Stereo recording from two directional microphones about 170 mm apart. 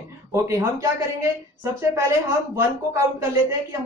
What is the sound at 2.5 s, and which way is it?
Speech, 15° right (ahead or behind).